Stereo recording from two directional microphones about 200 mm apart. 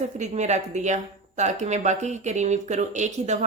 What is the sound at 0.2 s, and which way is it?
A woman's voice, 35° right (ahead or behind).